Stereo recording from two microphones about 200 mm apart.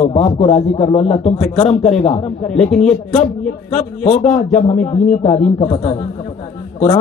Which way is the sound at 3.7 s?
35° left (ahead or behind).